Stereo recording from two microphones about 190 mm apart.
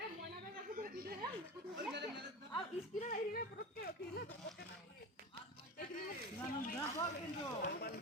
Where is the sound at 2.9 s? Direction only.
45° left (ahead or behind).